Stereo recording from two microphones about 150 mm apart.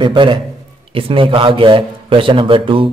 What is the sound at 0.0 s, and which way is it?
Speech, 30° right (ahead or behind).